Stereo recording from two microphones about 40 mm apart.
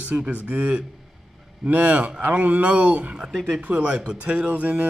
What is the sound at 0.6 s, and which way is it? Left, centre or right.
Speech, right.